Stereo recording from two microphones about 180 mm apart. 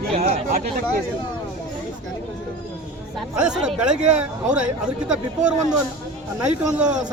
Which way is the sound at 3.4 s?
5° right (ahead or behind).